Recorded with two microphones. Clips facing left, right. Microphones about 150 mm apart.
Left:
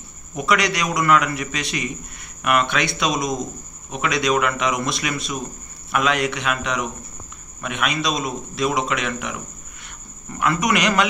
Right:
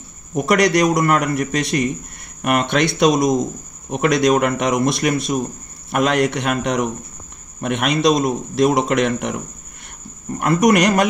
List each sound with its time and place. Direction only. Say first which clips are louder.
0.3 s a man's voice: right 6 dB; 50° right (ahead or behind)
10.4 s a man's voice: right 6 dB; 50° right (ahead or behind)